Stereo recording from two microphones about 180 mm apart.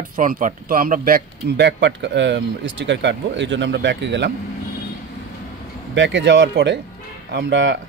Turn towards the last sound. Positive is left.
turn(degrees=-90)